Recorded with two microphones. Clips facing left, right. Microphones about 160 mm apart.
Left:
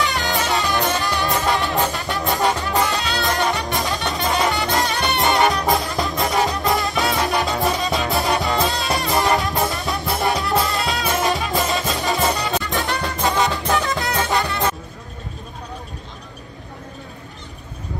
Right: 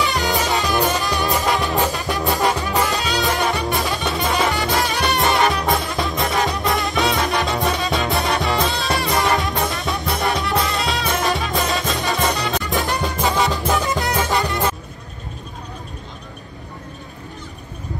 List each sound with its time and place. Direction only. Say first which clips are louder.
0.0 s music: right 2 dB; 20° right (ahead or behind)
3.5 s music: right 2 dB; centre (ahead or behind)
5.2 s music: left 1 dB; 20° left (ahead or behind)
5.5 s music: left 1 dB; centre (ahead or behind)
12.7 s music: right 2 dB; 20° right (ahead or behind)
13.2 s music: even; 5° right (ahead or behind)
13.7 s music: right 1 dB; 20° right (ahead or behind)